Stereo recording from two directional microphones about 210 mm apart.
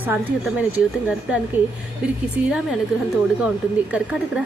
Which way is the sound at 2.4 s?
5° right (ahead or behind).